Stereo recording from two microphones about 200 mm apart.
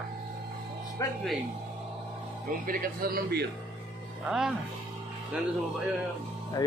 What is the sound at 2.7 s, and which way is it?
Speech, 45° right (ahead or behind).